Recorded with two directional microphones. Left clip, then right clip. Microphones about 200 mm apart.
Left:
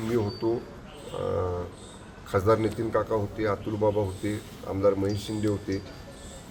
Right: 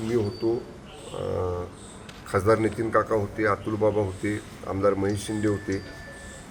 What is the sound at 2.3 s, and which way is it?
A man's voice, 5° right (ahead or behind).